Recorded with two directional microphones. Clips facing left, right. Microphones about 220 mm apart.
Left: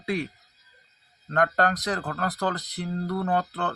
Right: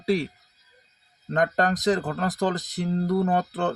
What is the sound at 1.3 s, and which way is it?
Speech, 20° right (ahead or behind).